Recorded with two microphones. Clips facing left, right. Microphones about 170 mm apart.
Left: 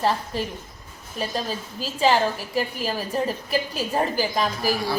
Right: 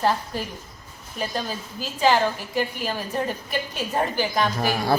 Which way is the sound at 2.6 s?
Centre (ahead or behind).